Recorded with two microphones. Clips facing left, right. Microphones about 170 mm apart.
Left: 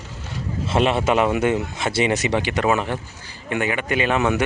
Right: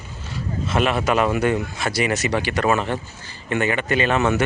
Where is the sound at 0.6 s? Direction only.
25° left (ahead or behind).